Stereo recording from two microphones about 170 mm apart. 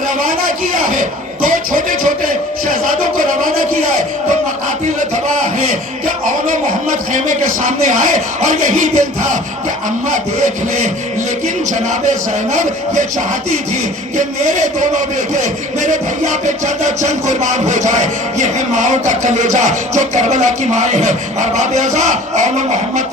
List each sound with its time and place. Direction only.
1.5 s music: 55° right (ahead or behind)
7.1 s a man's voice: 50° right (ahead or behind)
14.2 s a man's voice: 45° right (ahead or behind)